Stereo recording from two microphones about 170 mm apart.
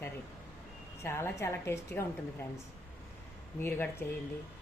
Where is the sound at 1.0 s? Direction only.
15° left (ahead or behind).